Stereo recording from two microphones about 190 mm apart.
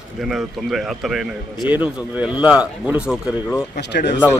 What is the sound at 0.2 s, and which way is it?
A man's voice, centre (ahead or behind).